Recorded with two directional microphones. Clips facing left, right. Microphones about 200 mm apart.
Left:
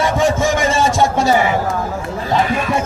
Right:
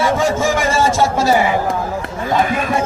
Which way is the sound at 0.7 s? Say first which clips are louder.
Even; centre (ahead or behind).